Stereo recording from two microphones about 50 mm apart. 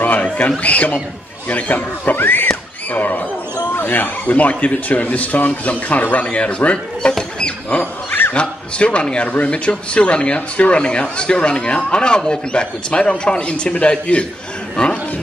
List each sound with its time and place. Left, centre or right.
0.0 s a sound: left
0.6 s speech: left
2.4 s a sound: left
3.8 s speech: left; by 7.2 s centre
7.3 s wild animals: left
8.3 s speech: left